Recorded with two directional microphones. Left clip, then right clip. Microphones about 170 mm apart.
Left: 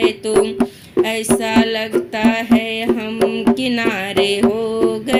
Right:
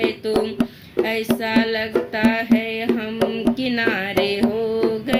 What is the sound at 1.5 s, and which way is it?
Music, 35° left (ahead or behind).